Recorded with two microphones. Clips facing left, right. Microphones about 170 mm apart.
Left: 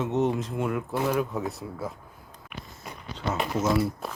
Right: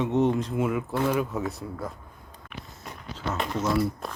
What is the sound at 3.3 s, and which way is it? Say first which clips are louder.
Speech: left 1 dB; 5° left (ahead or behind).